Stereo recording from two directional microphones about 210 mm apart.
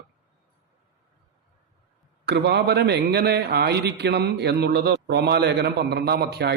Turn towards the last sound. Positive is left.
turn(degrees=-50)  # may be behind; listen again after turning